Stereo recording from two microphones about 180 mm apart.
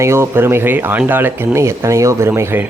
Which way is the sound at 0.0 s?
15° right (ahead or behind).